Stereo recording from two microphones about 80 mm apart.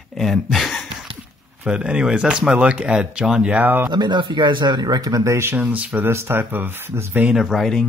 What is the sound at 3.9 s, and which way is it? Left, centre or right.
Speech, right.